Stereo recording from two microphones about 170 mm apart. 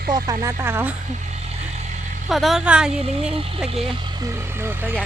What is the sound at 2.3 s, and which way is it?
A woman's voice, centre (ahead or behind).